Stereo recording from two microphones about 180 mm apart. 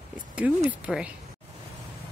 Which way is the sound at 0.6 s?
5° right (ahead or behind).